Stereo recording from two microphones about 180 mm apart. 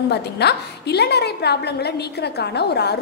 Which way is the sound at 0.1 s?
65° left (ahead or behind).